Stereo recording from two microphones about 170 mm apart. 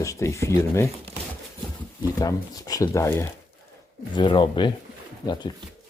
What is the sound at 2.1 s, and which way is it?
Speech, 20° left (ahead or behind).